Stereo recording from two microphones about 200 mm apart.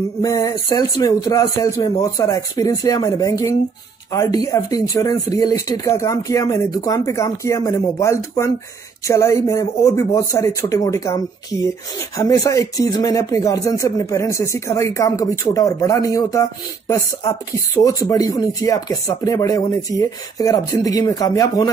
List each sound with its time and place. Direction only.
0.2 s speech: 15° left (ahead or behind)